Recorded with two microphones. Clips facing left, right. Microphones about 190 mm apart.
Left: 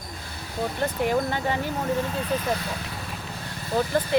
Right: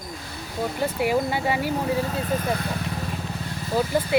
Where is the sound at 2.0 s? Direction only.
45° right (ahead or behind).